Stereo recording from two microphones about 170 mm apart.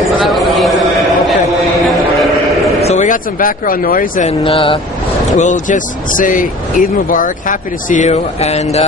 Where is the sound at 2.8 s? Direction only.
45° left (ahead or behind).